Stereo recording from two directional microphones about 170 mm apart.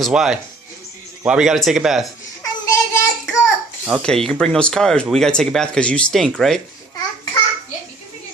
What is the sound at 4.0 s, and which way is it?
Speech, 5° left (ahead or behind).